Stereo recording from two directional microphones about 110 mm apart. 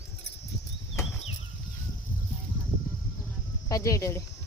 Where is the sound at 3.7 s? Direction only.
30° left (ahead or behind).